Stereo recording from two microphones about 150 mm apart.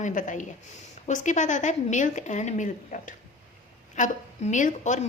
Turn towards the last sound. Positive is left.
turn(degrees=55)  # may be behind; listen again after turning